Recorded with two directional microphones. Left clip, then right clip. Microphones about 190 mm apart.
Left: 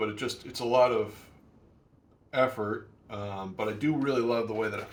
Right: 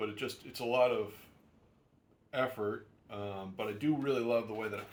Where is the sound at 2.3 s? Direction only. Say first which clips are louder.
Left 7 dB; 40° right (ahead or behind).